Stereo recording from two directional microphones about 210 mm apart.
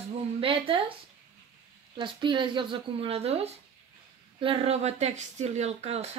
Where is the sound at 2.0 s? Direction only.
20° right (ahead or behind).